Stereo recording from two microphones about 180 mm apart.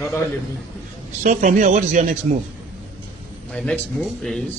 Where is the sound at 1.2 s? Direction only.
45° right (ahead or behind).